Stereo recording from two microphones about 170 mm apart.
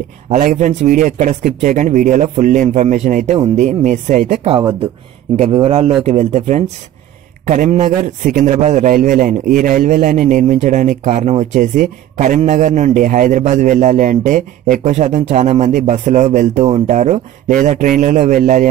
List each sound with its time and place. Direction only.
0.3 s a man's voice: 45° right (ahead or behind)
5.4 s a man's voice: 35° right (ahead or behind)